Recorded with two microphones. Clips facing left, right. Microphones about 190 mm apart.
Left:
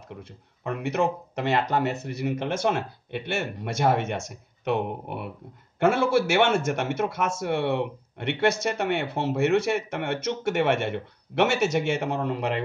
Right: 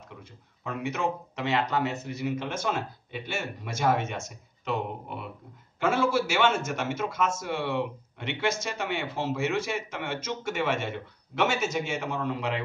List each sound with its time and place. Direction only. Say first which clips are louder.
0.1 s a man's voice: left 6 dB; 65° left (ahead or behind)